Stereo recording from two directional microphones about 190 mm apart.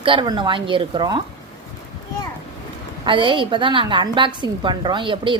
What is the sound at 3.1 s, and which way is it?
Speech, 25° right (ahead or behind).